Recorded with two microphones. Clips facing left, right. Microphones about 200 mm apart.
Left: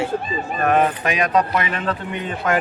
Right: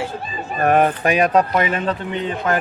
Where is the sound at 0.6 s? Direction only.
45° right (ahead or behind).